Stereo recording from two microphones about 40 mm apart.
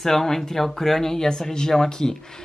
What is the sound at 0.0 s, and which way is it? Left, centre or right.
Speech, centre.